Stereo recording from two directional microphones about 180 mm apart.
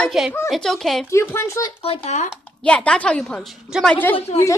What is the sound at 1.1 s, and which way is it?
Speech, 15° left (ahead or behind).